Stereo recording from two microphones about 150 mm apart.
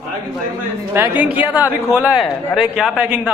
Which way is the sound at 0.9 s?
15° right (ahead or behind).